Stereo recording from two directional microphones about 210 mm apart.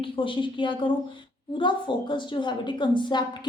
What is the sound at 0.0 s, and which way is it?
A woman's voice, 25° left (ahead or behind).